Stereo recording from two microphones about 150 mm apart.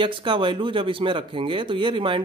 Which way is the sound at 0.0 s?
35° right (ahead or behind).